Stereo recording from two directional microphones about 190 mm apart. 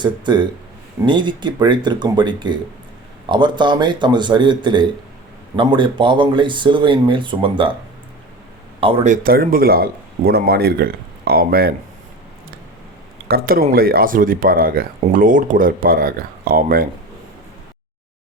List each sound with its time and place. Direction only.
0.0 s speech: 25° right (ahead or behind)
9.0 s speech: 50° right (ahead or behind)
13.2 s speech: 50° right (ahead or behind)